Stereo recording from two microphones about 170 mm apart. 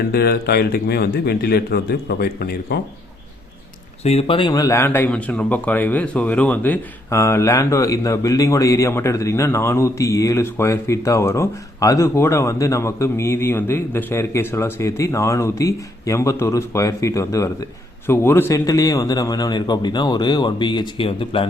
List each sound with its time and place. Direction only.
0.1 s a man's voice: 65° left (ahead or behind)
4.0 s a man's voice: 35° left (ahead or behind)